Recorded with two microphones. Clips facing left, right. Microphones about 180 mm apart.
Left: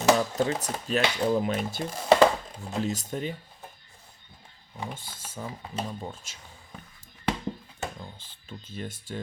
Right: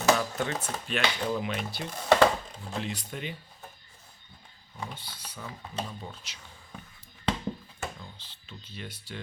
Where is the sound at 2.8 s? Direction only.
45° left (ahead or behind).